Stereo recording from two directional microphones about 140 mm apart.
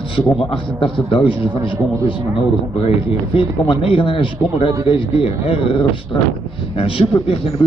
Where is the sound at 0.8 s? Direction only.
40° left (ahead or behind).